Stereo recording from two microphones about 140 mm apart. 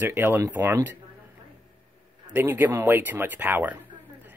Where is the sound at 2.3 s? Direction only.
15° right (ahead or behind).